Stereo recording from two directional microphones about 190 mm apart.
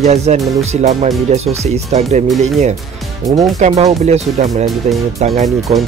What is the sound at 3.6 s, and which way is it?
Speech, 35° right (ahead or behind).